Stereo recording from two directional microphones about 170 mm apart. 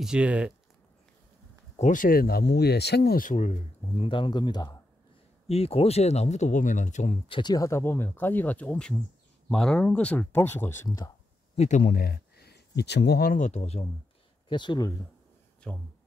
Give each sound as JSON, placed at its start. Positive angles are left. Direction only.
{"t": 0.0, "sound": "speech", "side_deg": -5}
{"t": 1.8, "sound": "speech", "side_deg": 50}
{"t": 5.5, "sound": "speech", "side_deg": 35}
{"t": 7.2, "sound": "speech", "side_deg": 25}
{"t": 11.5, "sound": "speech", "side_deg": 40}
{"t": 11.8, "sound": "speech", "side_deg": 60}
{"t": 13.4, "sound": "speech", "side_deg": 40}
{"t": 14.5, "sound": "speech", "side_deg": 25}
{"t": 15.7, "sound": "speech", "side_deg": 5}